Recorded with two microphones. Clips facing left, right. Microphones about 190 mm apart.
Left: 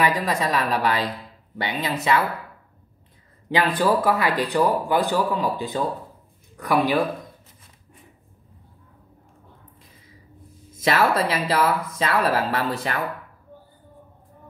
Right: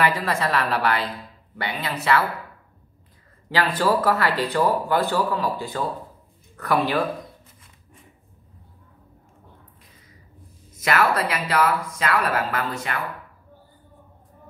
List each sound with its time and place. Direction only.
0.0 s speech: 15° left (ahead or behind)
3.7 s speech: 15° left (ahead or behind)
10.8 s a woman's voice: 25° left (ahead or behind)